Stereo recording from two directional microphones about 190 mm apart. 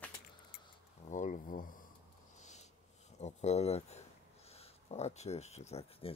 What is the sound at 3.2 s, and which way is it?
Speech, 35° left (ahead or behind).